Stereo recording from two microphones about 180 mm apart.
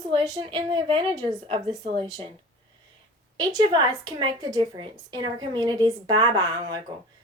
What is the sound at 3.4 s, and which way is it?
A woman's voice, 20° right (ahead or behind).